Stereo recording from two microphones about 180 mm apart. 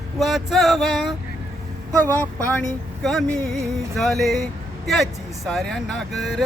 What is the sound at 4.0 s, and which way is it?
Speech, centre (ahead or behind).